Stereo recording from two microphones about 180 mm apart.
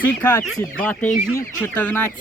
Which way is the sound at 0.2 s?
10° left (ahead or behind).